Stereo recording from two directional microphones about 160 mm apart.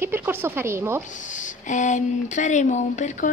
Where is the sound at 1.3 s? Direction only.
50° left (ahead or behind).